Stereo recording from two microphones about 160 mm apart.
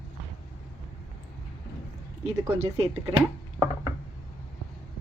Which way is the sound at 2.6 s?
45° right (ahead or behind).